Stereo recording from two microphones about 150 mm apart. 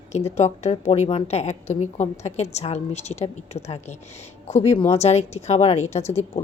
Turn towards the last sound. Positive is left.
turn(degrees=45)  # may be behind; listen again after turning